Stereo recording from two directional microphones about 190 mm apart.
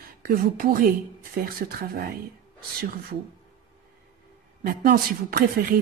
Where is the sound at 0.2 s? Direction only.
50° right (ahead or behind).